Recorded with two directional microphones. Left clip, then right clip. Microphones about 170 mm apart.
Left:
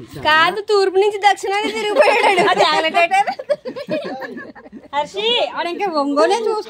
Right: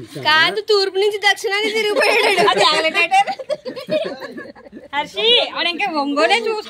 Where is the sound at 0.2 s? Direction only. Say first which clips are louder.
Left 1 dB; 60° left (ahead or behind).